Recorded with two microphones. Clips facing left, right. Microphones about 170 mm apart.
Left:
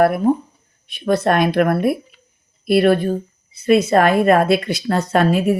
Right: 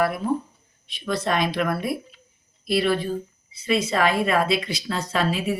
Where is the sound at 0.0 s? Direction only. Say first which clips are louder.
Left 8 dB; 55° left (ahead or behind).